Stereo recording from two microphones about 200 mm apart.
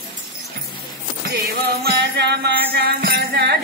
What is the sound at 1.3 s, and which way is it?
Music, 55° right (ahead or behind).